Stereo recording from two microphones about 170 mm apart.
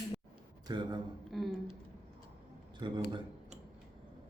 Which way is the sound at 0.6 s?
25° right (ahead or behind).